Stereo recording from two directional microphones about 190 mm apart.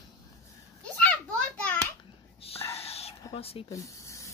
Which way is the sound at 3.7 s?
15° left (ahead or behind).